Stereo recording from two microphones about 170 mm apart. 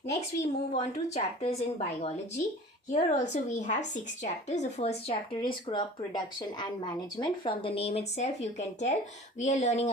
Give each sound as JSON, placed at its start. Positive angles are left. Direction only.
{"t": 0.1, "sound": "speech", "side_deg": 40}
{"t": 5.4, "sound": "speech", "side_deg": 30}